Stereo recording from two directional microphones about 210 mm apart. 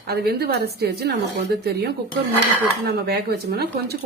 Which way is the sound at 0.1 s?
50° right (ahead or behind).